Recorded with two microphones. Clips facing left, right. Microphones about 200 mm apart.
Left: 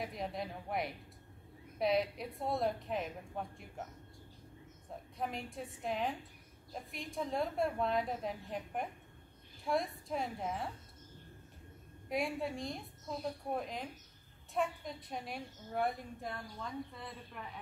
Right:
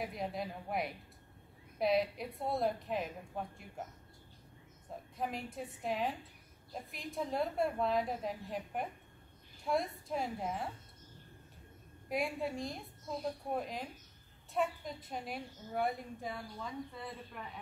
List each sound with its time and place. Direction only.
0.0 s a woman's voice: centre (ahead or behind)
4.8 s a woman's voice: centre (ahead or behind)
12.1 s a woman's voice: centre (ahead or behind)